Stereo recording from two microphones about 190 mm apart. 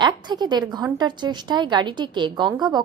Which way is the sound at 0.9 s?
25° right (ahead or behind).